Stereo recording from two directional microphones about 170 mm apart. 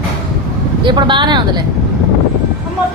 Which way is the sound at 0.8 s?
25° right (ahead or behind).